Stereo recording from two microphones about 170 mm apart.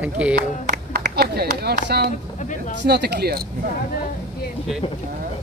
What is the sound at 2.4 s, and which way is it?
Speech, 45° left (ahead or behind).